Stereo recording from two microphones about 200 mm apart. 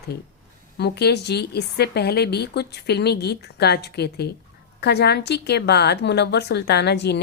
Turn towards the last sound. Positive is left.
turn(degrees=55)  # may be behind; listen again after turning